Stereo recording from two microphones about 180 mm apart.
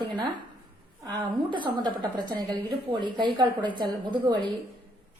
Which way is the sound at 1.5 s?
25° right (ahead or behind).